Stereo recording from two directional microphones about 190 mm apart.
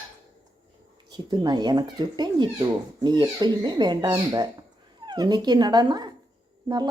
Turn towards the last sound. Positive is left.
turn(degrees=-20)  # may be behind; listen again after turning